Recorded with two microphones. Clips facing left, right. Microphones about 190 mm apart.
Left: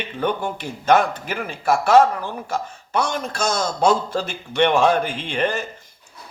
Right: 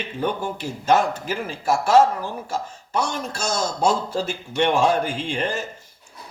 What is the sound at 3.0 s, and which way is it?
A man's voice, 60° left (ahead or behind).